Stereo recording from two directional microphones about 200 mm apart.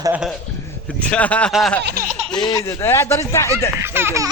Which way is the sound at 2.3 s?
20° left (ahead or behind).